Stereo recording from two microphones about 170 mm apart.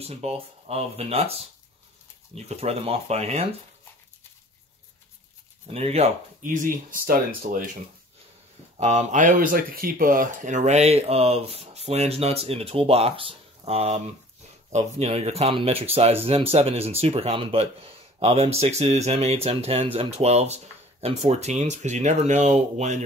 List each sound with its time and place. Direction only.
0.0 s speech: 35° right (ahead or behind)
2.3 s speech: 40° right (ahead or behind)
5.7 s speech: 35° right (ahead or behind)
6.4 s speech: 50° right (ahead or behind)
8.7 s speech: 40° right (ahead or behind)